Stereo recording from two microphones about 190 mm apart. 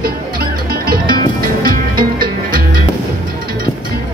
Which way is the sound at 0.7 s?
50° right (ahead or behind).